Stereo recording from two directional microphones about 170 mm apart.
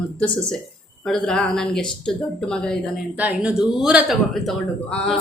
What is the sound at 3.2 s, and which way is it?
A woman's voice, 5° right (ahead or behind).